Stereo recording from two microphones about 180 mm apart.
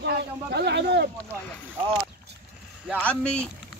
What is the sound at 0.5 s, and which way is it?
Speech, 65° right (ahead or behind).